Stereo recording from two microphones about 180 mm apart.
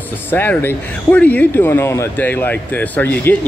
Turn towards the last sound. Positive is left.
turn(degrees=10)  # may be behind; listen again after turning